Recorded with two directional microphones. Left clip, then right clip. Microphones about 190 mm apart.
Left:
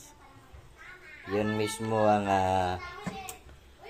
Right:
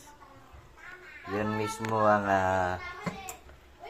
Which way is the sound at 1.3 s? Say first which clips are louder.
Left 2 dB; 15° left (ahead or behind).